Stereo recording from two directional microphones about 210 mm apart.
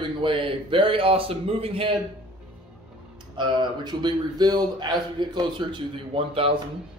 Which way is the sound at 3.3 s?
20° right (ahead or behind).